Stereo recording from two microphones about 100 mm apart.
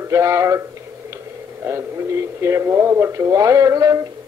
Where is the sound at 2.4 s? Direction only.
25° right (ahead or behind).